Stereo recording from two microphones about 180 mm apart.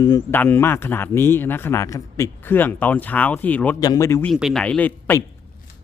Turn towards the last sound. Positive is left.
turn(degrees=10)  # may be behind; listen again after turning